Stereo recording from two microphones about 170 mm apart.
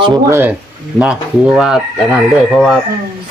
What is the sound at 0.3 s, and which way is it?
Speech, 15° right (ahead or behind).